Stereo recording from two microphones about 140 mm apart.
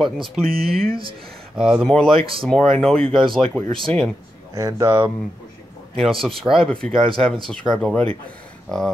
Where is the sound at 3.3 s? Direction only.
5° left (ahead or behind).